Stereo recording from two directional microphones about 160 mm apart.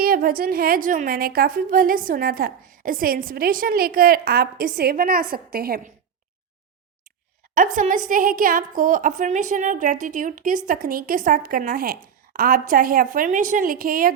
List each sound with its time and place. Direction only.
0.0 s a woman's voice: 65° right (ahead or behind)
7.5 s a woman's voice: 55° right (ahead or behind)